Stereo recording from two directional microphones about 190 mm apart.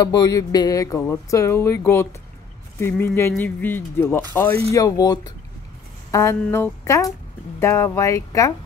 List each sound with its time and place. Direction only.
0.0 s speech: 20° left (ahead or behind)